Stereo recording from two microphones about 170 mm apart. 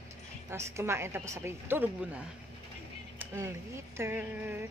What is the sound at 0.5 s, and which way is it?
A woman's voice, 15° right (ahead or behind).